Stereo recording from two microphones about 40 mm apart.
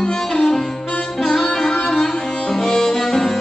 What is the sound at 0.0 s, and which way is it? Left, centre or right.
Music, centre.